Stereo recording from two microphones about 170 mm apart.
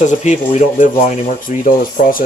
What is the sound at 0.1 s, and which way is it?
Speech, 45° left (ahead or behind).